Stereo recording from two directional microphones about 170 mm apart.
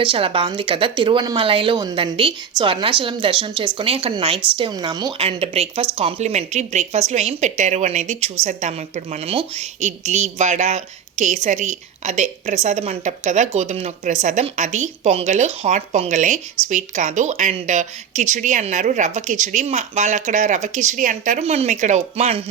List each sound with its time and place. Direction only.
0.0 s a woman's voice: 30° right (ahead or behind)